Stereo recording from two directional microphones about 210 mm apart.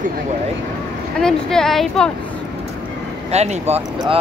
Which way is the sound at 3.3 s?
30° right (ahead or behind).